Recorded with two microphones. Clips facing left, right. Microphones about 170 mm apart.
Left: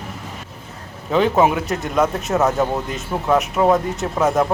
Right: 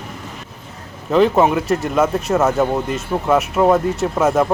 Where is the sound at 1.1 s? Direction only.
Centre (ahead or behind).